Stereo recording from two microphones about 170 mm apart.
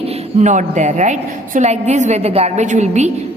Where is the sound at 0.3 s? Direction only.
45° right (ahead or behind).